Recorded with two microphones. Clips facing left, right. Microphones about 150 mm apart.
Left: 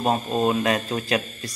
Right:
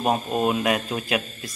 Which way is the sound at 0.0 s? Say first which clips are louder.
Left 1 dB; 10° right (ahead or behind).